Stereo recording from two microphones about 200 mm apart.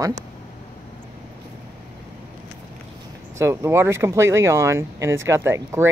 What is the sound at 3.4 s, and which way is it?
Speech, 15° right (ahead or behind).